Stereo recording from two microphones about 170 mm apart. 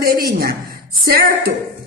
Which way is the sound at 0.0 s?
60° right (ahead or behind).